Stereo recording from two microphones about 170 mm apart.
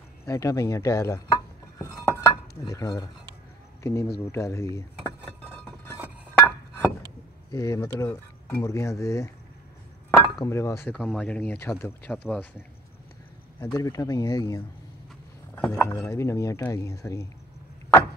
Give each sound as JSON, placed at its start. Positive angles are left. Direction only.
{"t": 0.3, "sound": "speech", "side_deg": 20}
{"t": 1.8, "sound": "dishes", "side_deg": 20}
{"t": 3.8, "sound": "speech", "side_deg": 15}
{"t": 5.5, "sound": "a sound", "side_deg": 10}
{"t": 6.3, "sound": "glass", "side_deg": 10}
{"t": 7.5, "sound": "speech", "side_deg": 20}
{"t": 10.4, "sound": "speech", "side_deg": 15}
{"t": 11.0, "sound": "speech", "side_deg": 5}
{"t": 13.7, "sound": "speech", "side_deg": 20}
{"t": 15.5, "sound": "a sound", "side_deg": 0}
{"t": 16.0, "sound": "speech", "side_deg": 15}